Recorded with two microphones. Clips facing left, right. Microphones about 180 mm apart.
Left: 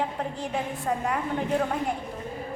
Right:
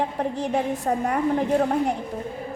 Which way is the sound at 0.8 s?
45° right (ahead or behind).